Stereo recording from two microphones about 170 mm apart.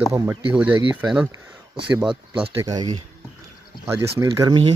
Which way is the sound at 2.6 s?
20° right (ahead or behind).